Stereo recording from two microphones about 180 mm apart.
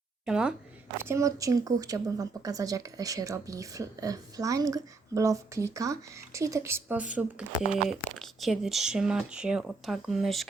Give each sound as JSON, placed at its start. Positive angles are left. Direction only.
{"t": 0.3, "sound": "speech", "side_deg": -5}